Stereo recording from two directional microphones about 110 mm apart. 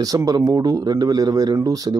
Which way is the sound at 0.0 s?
35° right (ahead or behind).